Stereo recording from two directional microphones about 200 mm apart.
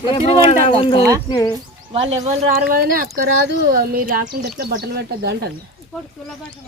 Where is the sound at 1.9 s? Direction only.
35° right (ahead or behind).